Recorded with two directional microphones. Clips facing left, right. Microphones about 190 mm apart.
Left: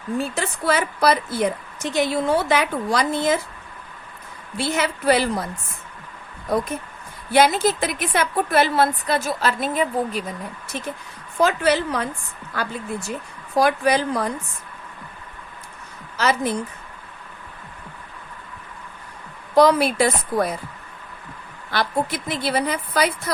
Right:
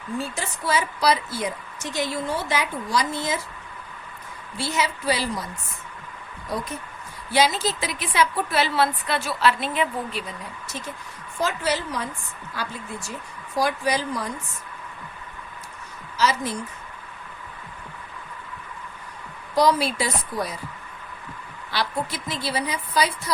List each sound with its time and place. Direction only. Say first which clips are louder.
0.2 s a woman's voice: left 6 dB; 60° left (ahead or behind)
4.5 s a woman's voice: left 3 dB; 55° left (ahead or behind)
7.3 s a woman's voice: left 5 dB; 55° left (ahead or behind)
11.3 s a woman's voice: left 6 dB; 60° left (ahead or behind)
13.6 s a woman's voice: left 5 dB; 60° left (ahead or behind)
16.1 s a woman's voice: left 3 dB; 55° left (ahead or behind)
19.5 s a woman's voice: left 5 dB; 55° left (ahead or behind)
21.7 s a woman's voice: left 4 dB; 50° left (ahead or behind)